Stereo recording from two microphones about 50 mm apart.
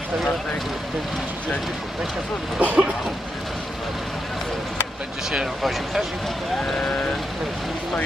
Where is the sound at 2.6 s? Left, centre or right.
Right.